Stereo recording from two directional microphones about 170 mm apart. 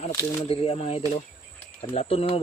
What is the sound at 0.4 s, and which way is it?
Speech, 35° left (ahead or behind).